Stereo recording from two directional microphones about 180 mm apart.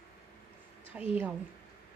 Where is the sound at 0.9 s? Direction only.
5° right (ahead or behind).